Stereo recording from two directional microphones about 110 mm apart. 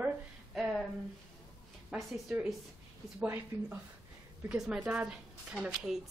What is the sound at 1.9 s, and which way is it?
Speech, 5° right (ahead or behind).